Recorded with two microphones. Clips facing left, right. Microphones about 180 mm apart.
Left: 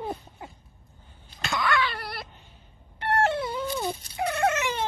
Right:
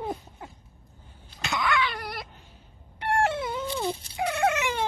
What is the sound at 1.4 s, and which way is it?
Cat, 20° right (ahead or behind).